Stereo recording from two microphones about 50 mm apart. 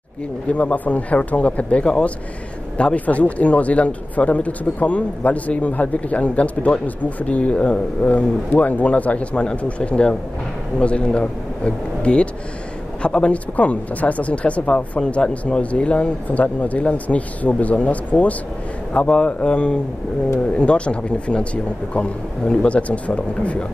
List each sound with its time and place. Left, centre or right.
0.5 s a man's voice: left